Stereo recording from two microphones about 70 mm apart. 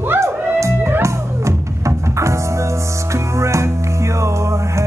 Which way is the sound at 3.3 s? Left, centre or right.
Right.